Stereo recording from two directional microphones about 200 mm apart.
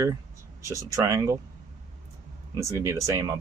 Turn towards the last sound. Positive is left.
turn(degrees=-15)  # may be behind; listen again after turning